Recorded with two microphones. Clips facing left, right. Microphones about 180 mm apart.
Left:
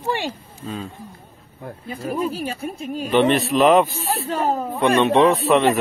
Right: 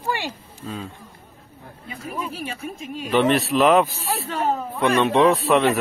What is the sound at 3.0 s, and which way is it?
Speech, centre (ahead or behind).